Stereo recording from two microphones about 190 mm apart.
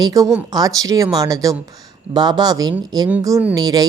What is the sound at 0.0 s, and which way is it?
A woman's voice, 20° right (ahead or behind).